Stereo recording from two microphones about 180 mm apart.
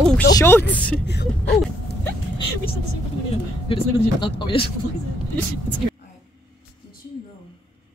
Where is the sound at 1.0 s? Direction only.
65° left (ahead or behind).